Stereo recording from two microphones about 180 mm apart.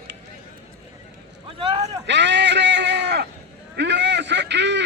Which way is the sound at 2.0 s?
75° right (ahead or behind).